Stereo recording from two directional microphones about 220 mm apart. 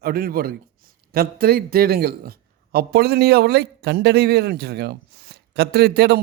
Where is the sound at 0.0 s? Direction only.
40° right (ahead or behind).